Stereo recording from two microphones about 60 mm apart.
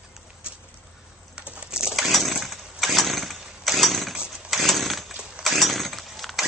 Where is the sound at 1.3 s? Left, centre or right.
Centre.